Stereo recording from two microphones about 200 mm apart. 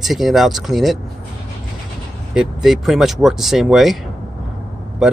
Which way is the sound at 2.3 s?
Centre (ahead or behind).